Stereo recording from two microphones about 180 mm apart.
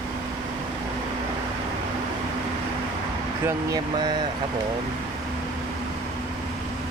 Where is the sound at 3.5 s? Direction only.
20° right (ahead or behind).